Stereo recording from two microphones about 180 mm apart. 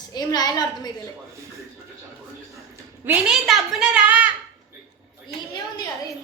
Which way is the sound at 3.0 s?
10° right (ahead or behind).